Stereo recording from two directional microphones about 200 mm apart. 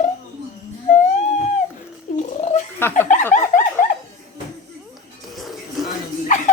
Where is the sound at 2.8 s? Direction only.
10° left (ahead or behind).